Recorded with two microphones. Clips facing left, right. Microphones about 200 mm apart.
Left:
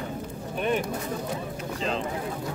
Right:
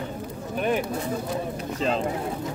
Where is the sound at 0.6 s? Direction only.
5° right (ahead or behind).